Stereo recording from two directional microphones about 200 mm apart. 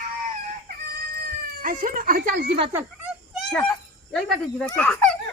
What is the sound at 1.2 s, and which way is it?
Speech, 45° right (ahead or behind).